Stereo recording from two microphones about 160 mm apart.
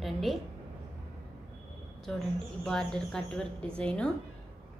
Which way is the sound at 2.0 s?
5° left (ahead or behind).